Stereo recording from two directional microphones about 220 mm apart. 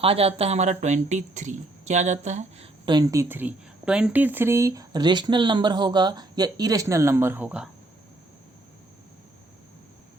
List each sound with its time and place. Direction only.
0.0 s speech: 25° right (ahead or behind)
2.8 s speech: 15° right (ahead or behind)